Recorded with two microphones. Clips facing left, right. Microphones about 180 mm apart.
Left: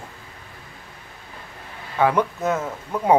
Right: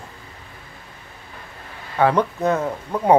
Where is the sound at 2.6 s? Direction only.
15° right (ahead or behind).